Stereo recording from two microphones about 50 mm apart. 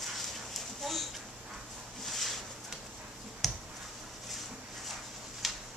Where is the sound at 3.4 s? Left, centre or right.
Centre.